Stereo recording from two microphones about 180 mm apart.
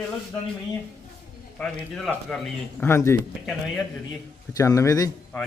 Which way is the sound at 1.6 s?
Centre (ahead or behind).